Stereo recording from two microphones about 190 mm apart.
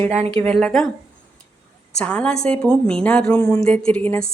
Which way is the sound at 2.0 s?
5° left (ahead or behind).